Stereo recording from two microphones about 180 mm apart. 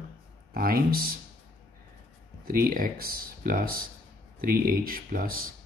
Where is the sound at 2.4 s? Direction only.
50° right (ahead or behind).